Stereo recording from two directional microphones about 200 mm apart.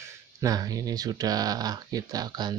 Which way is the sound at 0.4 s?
15° right (ahead or behind).